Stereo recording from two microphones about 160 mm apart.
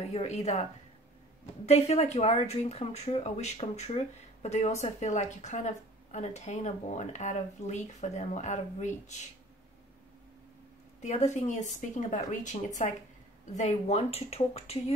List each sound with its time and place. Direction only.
0.1 s speech: 45° left (ahead or behind)
1.7 s speech: 45° left (ahead or behind)
11.0 s speech: 45° left (ahead or behind)